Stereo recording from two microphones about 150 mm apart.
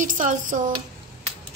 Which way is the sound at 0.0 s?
60° right (ahead or behind).